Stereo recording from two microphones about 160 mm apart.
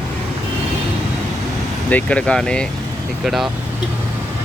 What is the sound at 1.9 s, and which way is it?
Speech, 10° left (ahead or behind).